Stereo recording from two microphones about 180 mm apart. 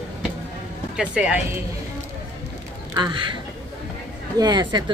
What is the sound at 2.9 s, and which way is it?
Speech, 25° right (ahead or behind).